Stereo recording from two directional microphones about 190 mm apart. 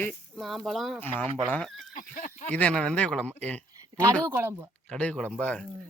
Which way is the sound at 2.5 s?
5° left (ahead or behind).